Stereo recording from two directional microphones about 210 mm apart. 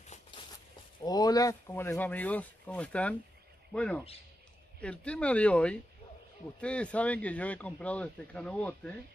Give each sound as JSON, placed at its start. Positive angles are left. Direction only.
{"t": 0.0, "sound": "walk", "side_deg": 35}
{"t": 1.0, "sound": "speech", "side_deg": 20}